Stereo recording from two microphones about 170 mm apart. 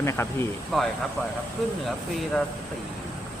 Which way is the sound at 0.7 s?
5° left (ahead or behind).